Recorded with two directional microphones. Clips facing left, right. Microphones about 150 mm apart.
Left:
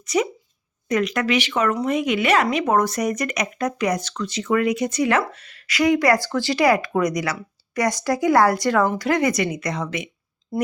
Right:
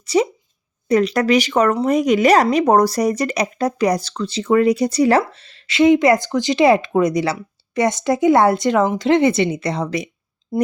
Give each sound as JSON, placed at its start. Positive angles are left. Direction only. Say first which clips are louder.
{"t": 0.0, "sound": "speech", "louder": "right 4 dB", "side_deg": -30}
{"t": 10.5, "sound": "speech", "louder": "right 5 dB", "side_deg": -25}